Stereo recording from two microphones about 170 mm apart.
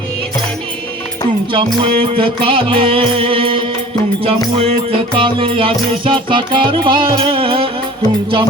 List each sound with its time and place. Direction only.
1.5 s music: 30° right (ahead or behind)